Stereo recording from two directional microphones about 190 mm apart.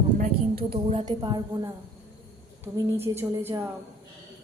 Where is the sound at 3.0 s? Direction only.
10° right (ahead or behind).